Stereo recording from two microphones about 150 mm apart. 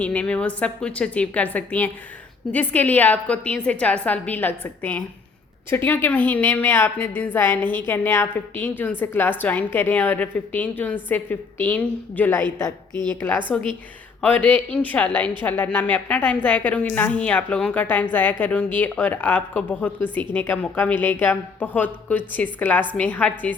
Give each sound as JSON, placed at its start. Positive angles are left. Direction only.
{"t": 0.0, "sound": "a woman's voice", "side_deg": 10}
{"t": 12.9, "sound": "a woman's voice", "side_deg": -30}
{"t": 13.2, "sound": "a woman's voice", "side_deg": 10}